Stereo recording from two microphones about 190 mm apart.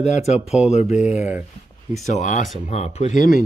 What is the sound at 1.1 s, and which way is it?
Speech, 5° right (ahead or behind).